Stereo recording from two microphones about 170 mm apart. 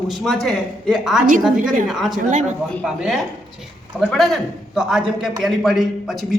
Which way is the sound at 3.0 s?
Centre (ahead or behind).